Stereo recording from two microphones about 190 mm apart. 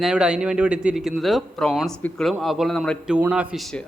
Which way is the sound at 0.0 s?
5° right (ahead or behind).